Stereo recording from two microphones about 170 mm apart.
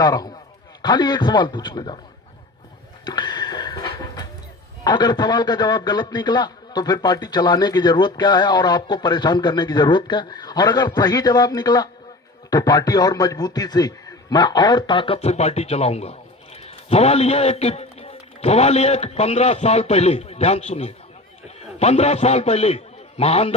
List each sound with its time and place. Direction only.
0.0 s a man's voice: 20° left (ahead or behind)
3.1 s a sound: 25° left (ahead or behind)
4.8 s a man's voice: 25° left (ahead or behind)